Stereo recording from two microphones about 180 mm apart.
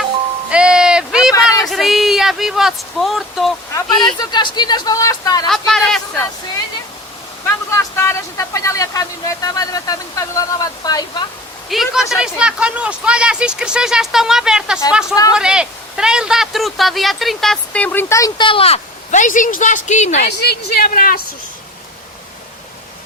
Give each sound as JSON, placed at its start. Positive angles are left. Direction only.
{"t": 0.5, "sound": "a sound", "side_deg": -5}
{"t": 1.5, "sound": "speech", "side_deg": 0}
{"t": 4.2, "sound": "speech", "side_deg": 25}
{"t": 5.5, "sound": "speech", "side_deg": 5}
{"t": 7.4, "sound": "speech", "side_deg": 15}
{"t": 11.7, "sound": "speech", "side_deg": 0}
{"t": 15.1, "sound": "speech", "side_deg": 20}
{"t": 15.4, "sound": "speech", "side_deg": -5}
{"t": 20.4, "sound": "a woman's voice", "side_deg": 65}